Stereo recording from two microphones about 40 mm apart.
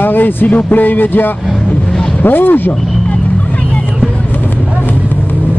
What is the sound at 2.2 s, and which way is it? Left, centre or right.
Speech, left.